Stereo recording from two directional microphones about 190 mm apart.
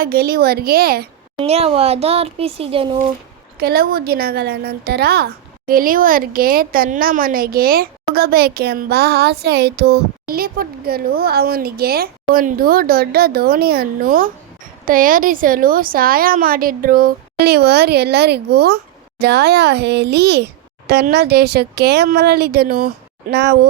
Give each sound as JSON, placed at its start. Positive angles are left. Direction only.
{"t": 0.0, "sound": "a child's voice", "side_deg": -50}
{"t": 1.4, "sound": "speech", "side_deg": -30}
{"t": 3.6, "sound": "a woman's voice", "side_deg": -55}